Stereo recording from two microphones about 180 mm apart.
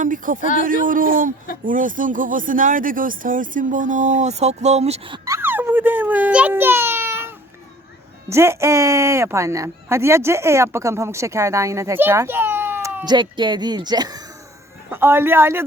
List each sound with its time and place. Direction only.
0.0 s speech: 45° right (ahead or behind); by 5.3 s 30° right (ahead or behind)
5.3 s a sound: 10° right (ahead or behind)
8.3 s speech: 15° right (ahead or behind)
13.1 s speech: 25° right (ahead or behind)